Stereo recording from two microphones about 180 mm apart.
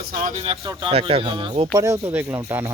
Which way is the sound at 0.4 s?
30° right (ahead or behind).